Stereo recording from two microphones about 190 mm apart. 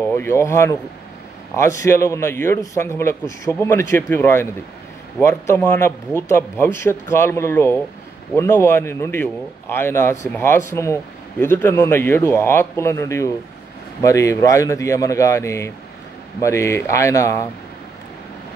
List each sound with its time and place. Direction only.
0.1 s a man's voice: 15° left (ahead or behind)